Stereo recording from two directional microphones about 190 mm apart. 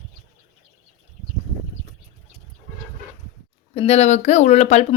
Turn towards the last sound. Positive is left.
turn(degrees=35)  # may be behind; listen again after turning